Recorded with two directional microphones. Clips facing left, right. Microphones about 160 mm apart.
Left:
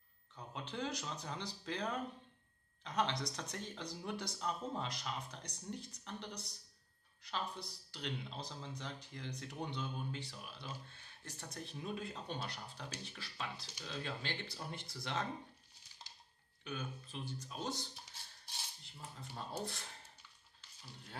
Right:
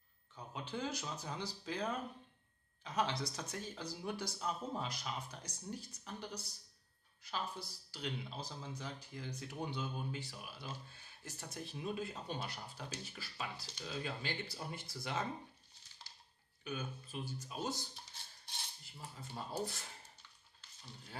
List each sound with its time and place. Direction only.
0.4 s speech: 5° right (ahead or behind)
16.0 s dishes: 20° left (ahead or behind)
16.6 s speech: 5° right (ahead or behind)
18.9 s speech: 5° right (ahead or behind)